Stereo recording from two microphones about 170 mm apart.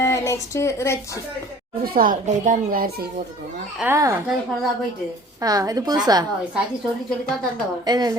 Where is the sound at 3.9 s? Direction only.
15° right (ahead or behind).